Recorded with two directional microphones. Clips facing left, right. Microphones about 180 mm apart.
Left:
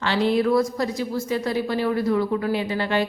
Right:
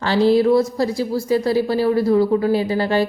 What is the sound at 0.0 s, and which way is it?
A woman's voice, 35° right (ahead or behind).